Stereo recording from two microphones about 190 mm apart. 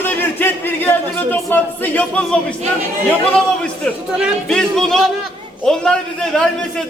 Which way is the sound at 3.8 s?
Centre (ahead or behind).